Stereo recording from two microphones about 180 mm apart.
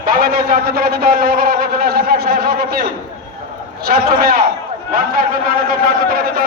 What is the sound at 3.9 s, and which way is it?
Speech, 55° right (ahead or behind).